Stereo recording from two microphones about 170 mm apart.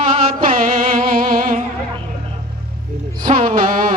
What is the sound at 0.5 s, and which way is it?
Music, 55° right (ahead or behind).